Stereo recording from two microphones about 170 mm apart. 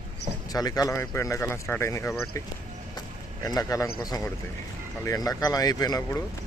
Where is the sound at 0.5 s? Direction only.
20° left (ahead or behind).